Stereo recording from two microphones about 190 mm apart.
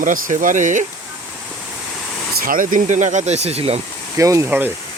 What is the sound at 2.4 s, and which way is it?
Speech, 45° right (ahead or behind).